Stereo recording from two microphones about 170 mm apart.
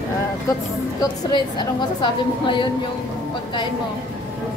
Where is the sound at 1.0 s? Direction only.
25° left (ahead or behind).